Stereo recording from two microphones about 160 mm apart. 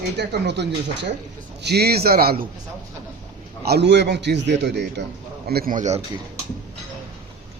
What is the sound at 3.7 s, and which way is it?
A man's voice, 90° right.